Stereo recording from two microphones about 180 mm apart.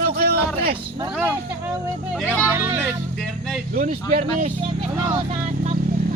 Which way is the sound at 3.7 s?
50° right (ahead or behind).